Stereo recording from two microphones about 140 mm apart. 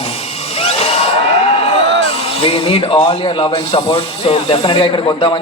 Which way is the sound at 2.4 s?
45° left (ahead or behind).